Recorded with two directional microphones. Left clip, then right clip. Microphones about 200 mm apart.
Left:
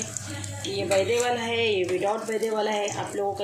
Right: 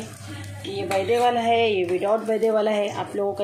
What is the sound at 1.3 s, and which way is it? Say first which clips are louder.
Speech: right 5 dB; 40° right (ahead or behind).